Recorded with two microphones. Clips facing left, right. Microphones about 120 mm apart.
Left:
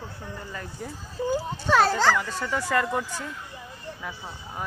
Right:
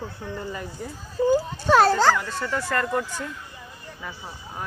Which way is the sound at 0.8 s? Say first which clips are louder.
Right 1 dB; centre (ahead or behind).